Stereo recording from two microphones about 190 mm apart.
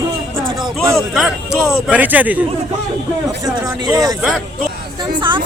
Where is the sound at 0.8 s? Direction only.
Centre (ahead or behind).